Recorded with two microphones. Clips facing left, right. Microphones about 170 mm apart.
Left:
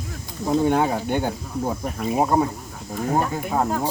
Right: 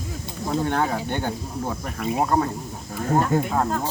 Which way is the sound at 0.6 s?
10° left (ahead or behind).